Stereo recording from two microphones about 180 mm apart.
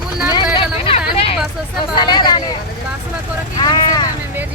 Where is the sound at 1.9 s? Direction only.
25° left (ahead or behind).